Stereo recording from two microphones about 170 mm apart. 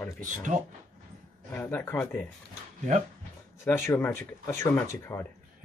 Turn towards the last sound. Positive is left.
turn(degrees=15)  # may be behind; listen again after turning